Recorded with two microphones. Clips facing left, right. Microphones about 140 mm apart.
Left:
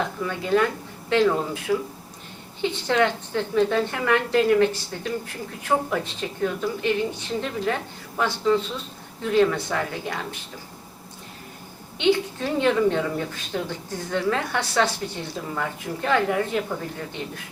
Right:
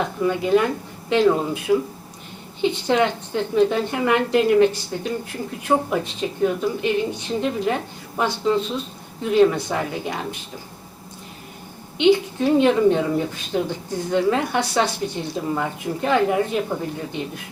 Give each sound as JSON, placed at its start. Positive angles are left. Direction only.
{"t": 0.2, "sound": "a woman's voice", "side_deg": -15}
{"t": 11.9, "sound": "a woman's voice", "side_deg": -15}